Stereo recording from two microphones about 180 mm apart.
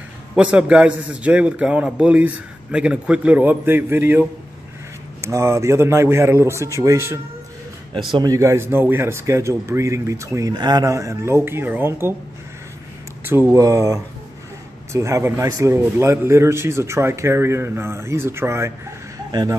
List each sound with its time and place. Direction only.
0.4 s a man's voice: 5° right (ahead or behind)
5.2 s a man's voice: 15° right (ahead or behind)
13.2 s a man's voice: 10° right (ahead or behind)